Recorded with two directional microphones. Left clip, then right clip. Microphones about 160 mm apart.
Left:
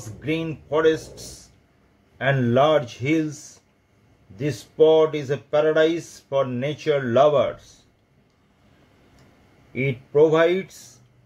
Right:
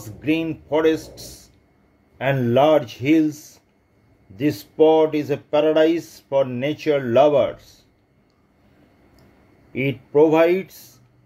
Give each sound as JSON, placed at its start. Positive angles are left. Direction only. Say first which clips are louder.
{"t": 0.0, "sound": "speech", "louder": "right 4 dB", "side_deg": -25}
{"t": 4.4, "sound": "speech", "louder": "right 1 dB", "side_deg": -30}
{"t": 9.8, "sound": "speech", "louder": "right 1 dB", "side_deg": -30}